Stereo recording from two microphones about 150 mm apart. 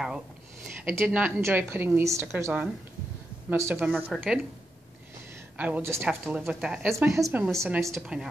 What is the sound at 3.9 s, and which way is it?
Speech, centre (ahead or behind).